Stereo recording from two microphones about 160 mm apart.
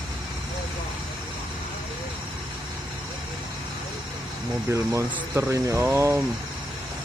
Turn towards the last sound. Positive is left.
turn(degrees=-15)  # may be behind; listen again after turning